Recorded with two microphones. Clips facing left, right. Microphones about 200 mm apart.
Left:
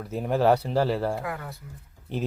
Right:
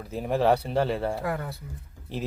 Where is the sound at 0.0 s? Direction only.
Centre (ahead or behind).